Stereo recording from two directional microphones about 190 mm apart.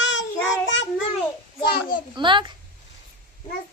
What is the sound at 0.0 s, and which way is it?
Child singing, 75° left (ahead or behind).